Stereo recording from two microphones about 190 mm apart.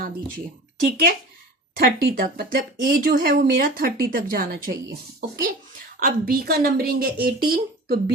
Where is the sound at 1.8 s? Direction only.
50° right (ahead or behind).